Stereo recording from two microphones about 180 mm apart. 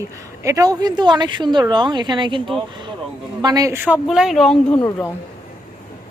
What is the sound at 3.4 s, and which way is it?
Speech, 20° right (ahead or behind).